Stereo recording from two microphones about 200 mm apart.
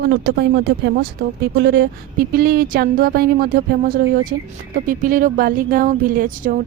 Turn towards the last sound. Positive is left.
turn(degrees=-45)  # may be behind; listen again after turning